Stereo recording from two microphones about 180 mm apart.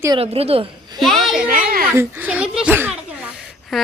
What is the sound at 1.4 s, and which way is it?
Speech, 55° right (ahead or behind).